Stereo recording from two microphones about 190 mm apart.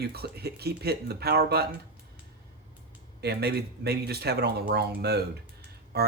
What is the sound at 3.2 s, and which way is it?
Speech, 60° right (ahead or behind).